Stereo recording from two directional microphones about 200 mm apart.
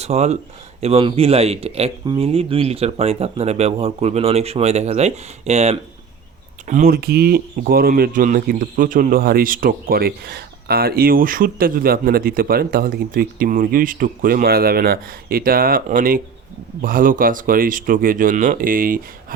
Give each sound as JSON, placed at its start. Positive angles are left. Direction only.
{"t": 0.0, "sound": "speech", "side_deg": -35}
{"t": 6.7, "sound": "speech", "side_deg": -45}